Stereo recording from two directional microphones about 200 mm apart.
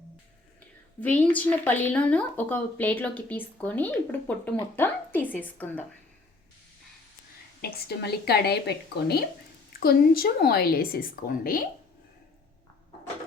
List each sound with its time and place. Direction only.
1.0 s a woman's voice: 10° left (ahead or behind)
7.6 s a woman's voice: 55° left (ahead or behind)